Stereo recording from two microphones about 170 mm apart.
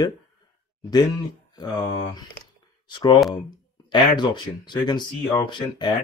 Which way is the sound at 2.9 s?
30° left (ahead or behind).